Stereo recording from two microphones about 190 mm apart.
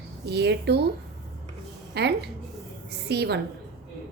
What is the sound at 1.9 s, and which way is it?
A woman's voice, 60° right (ahead or behind).